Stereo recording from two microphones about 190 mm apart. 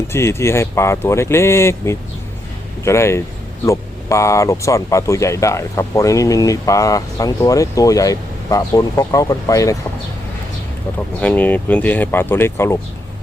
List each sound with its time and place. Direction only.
0.1 s speech: 15° left (ahead or behind)
11.2 s speech: 10° left (ahead or behind)